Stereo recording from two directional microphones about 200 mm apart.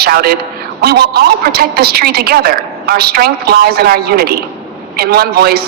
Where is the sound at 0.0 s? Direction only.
50° right (ahead or behind).